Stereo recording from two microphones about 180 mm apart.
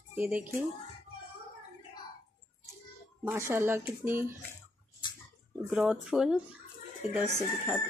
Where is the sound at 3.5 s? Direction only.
15° right (ahead or behind).